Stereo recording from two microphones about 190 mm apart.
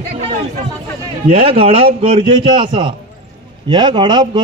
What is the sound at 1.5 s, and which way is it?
A man's voice, 30° right (ahead or behind).